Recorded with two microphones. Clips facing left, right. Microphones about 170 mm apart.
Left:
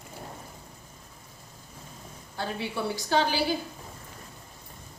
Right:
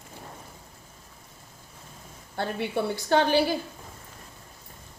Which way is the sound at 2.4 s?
55° right (ahead or behind).